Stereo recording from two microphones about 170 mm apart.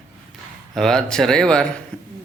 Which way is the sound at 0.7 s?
5° left (ahead or behind).